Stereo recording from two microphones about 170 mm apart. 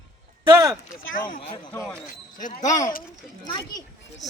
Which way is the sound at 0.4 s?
20° right (ahead or behind).